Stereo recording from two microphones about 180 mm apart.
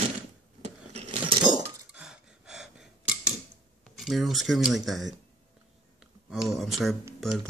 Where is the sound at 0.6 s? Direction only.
35° right (ahead or behind).